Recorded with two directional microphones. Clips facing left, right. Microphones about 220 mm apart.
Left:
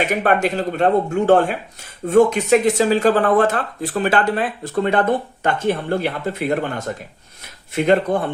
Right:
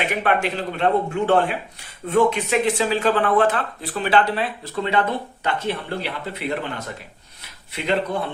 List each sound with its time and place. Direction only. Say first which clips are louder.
0.1 s speech: left 4 dB; 40° left (ahead or behind)